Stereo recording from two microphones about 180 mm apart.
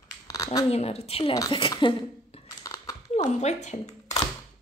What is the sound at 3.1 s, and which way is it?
Speech, 40° left (ahead or behind).